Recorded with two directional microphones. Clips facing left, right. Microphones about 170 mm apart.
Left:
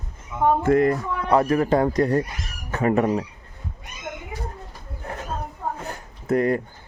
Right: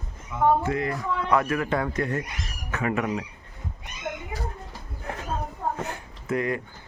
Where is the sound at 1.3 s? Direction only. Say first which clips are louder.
Left 6 dB; 35° left (ahead or behind).